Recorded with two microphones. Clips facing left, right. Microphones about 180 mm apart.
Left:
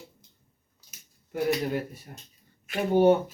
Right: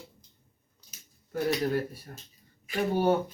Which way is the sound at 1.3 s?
15° left (ahead or behind).